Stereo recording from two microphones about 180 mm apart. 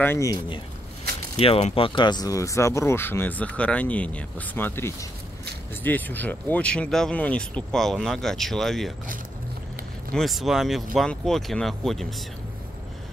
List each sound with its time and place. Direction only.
0.0 s speech: 15° left (ahead or behind)
1.4 s speech: 30° left (ahead or behind); by 8.9 s centre (ahead or behind)
10.1 s speech: centre (ahead or behind)